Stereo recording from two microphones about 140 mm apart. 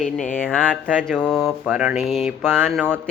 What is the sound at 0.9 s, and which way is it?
Speech, 5° left (ahead or behind).